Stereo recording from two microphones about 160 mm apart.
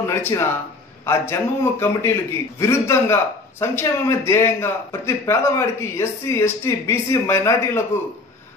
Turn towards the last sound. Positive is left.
turn(degrees=15)  # may be behind; listen again after turning